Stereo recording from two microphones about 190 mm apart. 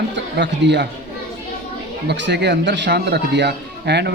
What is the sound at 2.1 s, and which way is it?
A man's voice, 65° right (ahead or behind).